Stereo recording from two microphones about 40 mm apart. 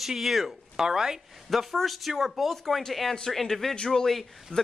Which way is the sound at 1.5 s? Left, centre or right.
Centre.